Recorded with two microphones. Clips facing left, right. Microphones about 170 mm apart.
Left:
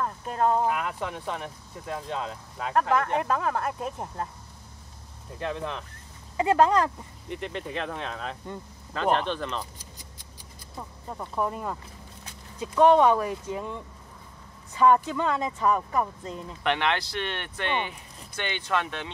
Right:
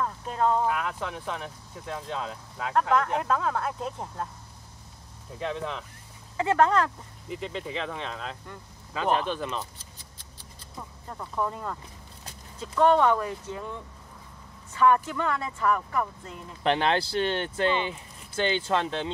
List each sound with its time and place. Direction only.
0.0 s speech: 10° left (ahead or behind)
5.4 s speech: centre (ahead or behind)
6.3 s speech: 15° left (ahead or behind)
7.2 s speech: centre (ahead or behind)
9.6 s a sound: 10° left (ahead or behind)
12.5 s speech: 15° left (ahead or behind)
16.6 s speech: 30° right (ahead or behind)